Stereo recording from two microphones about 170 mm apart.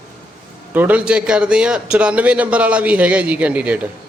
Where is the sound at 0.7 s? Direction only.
10° right (ahead or behind).